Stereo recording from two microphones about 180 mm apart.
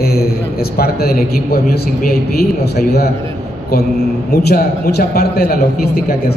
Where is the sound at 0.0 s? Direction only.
60° left (ahead or behind).